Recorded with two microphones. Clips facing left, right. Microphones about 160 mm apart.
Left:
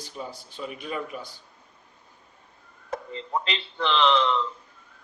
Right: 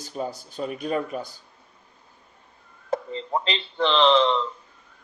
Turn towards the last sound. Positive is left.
turn(degrees=-30)  # may be behind; listen again after turning